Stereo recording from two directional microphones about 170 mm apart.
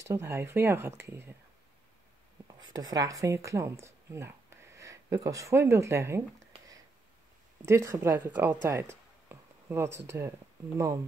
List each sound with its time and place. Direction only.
0.0 s speech: 15° right (ahead or behind)
2.7 s speech: 25° right (ahead or behind)
7.6 s speech: 15° right (ahead or behind)
8.6 s a sound: 15° right (ahead or behind)
9.9 s speech: 15° right (ahead or behind)